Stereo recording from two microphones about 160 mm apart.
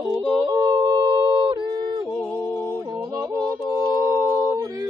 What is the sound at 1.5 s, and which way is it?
Music, 25° right (ahead or behind).